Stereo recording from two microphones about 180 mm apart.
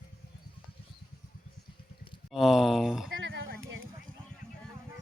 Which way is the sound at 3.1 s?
90° right.